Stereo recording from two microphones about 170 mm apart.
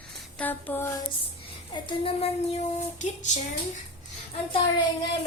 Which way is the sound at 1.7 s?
30° left (ahead or behind).